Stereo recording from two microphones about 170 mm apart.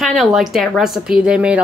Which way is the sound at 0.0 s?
Centre (ahead or behind).